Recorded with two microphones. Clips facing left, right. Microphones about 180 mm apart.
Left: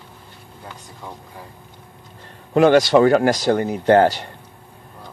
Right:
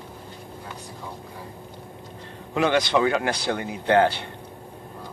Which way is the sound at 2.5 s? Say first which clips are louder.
Left 8 dB; 40° left (ahead or behind).